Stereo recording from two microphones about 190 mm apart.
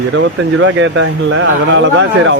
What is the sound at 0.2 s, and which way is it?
Speech, 85° right.